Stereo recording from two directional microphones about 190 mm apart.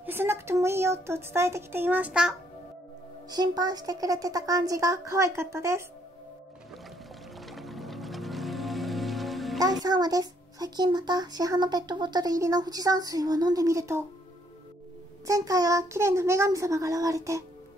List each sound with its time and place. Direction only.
0.0 s speech: 10° right (ahead or behind)
3.3 s speech: 20° right (ahead or behind)
7.3 s music: centre (ahead or behind)
9.6 s a child's voice: 20° right (ahead or behind)
15.2 s speech: 15° right (ahead or behind)